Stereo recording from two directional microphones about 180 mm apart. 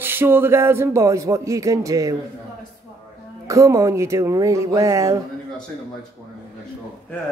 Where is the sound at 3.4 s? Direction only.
15° right (ahead or behind).